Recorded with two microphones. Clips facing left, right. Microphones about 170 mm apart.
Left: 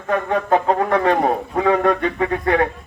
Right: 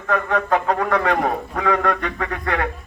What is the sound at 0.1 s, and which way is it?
A man's voice, 25° left (ahead or behind).